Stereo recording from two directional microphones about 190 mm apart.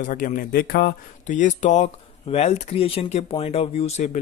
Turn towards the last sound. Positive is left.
turn(degrees=35)  # may be behind; listen again after turning